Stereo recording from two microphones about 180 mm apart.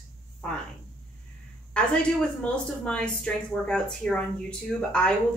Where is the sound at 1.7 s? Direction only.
5° left (ahead or behind).